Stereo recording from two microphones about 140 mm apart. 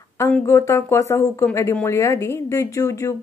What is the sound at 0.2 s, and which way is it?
Speech, 20° left (ahead or behind).